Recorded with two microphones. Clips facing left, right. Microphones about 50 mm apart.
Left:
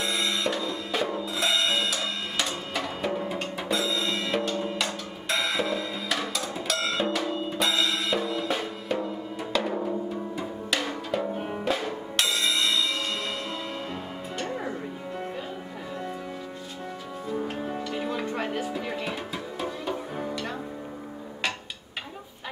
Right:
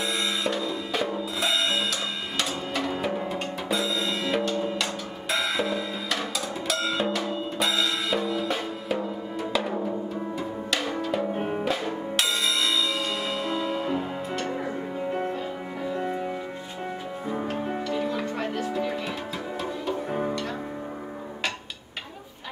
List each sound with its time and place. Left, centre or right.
0.0 s drum kit: centre
10.9 s drum: centre
11.6 s music: centre
14.7 s music: right
17.9 s music: centre